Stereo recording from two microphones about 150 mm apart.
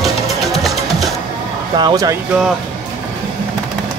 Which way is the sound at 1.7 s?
25° right (ahead or behind).